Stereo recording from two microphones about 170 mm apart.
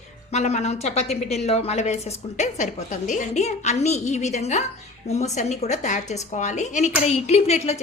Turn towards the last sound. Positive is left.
turn(degrees=40)  # may be behind; listen again after turning